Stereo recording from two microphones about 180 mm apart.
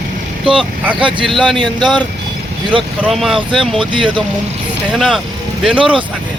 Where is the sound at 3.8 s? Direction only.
25° right (ahead or behind).